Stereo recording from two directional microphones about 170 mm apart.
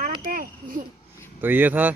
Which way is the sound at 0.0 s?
55° right (ahead or behind).